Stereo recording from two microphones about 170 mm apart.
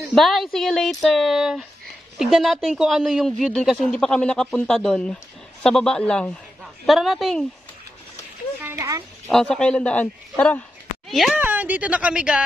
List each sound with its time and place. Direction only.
0.1 s a man's voice: centre (ahead or behind)
8.6 s speech: 20° right (ahead or behind)
9.3 s a man's voice: 5° left (ahead or behind)
11.4 s a woman's voice: 10° right (ahead or behind)